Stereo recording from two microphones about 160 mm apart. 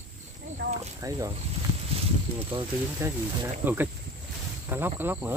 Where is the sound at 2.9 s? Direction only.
15° right (ahead or behind).